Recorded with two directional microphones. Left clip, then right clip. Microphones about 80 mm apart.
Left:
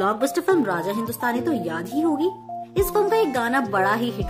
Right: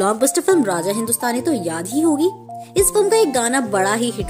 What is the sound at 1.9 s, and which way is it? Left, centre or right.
Speech, right.